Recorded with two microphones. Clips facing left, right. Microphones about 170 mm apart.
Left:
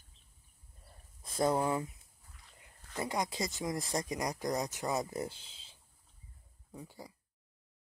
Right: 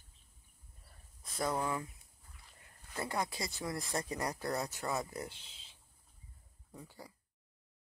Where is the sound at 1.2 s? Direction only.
30° left (ahead or behind).